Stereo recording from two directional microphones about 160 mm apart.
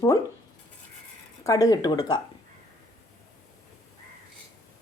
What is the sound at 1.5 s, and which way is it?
Speech, 20° left (ahead or behind).